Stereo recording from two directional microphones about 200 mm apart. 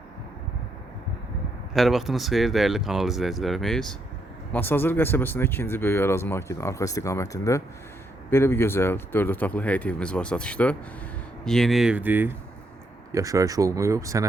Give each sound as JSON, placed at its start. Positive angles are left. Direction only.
{"t": 1.7, "sound": "speech", "side_deg": 0}